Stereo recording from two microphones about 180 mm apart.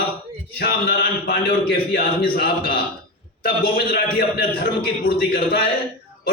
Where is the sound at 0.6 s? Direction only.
55° left (ahead or behind).